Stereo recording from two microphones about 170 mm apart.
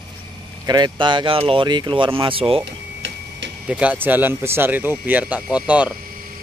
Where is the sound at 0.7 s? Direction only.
25° right (ahead or behind).